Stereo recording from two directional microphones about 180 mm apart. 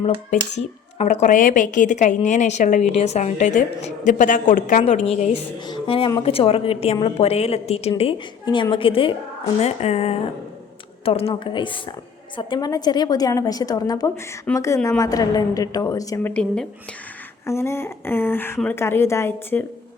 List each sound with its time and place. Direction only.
0.9 s a woman's voice: 40° left (ahead or behind)
5.6 s a woman's voice: 25° left (ahead or behind)
16.3 s a woman's voice: 5° left (ahead or behind)